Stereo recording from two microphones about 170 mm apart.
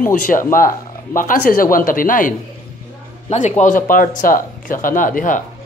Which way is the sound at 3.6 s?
50° left (ahead or behind).